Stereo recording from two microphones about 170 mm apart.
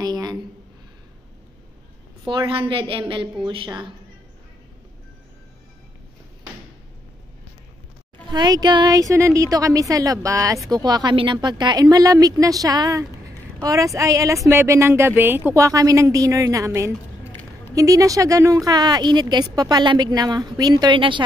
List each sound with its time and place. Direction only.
0.0 s a sound: 25° right (ahead or behind)
2.2 s a woman's voice: 30° right (ahead or behind)
8.3 s a woman's voice: 25° right (ahead or behind)